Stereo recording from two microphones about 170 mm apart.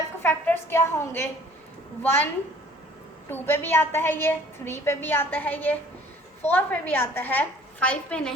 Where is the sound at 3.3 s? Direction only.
10° left (ahead or behind).